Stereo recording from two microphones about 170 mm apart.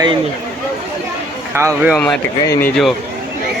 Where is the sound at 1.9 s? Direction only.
5° left (ahead or behind).